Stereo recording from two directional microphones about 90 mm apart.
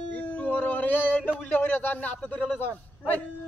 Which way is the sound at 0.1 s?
20° left (ahead or behind).